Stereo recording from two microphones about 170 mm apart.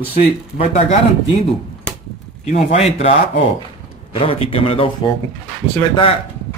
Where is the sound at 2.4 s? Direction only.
40° left (ahead or behind).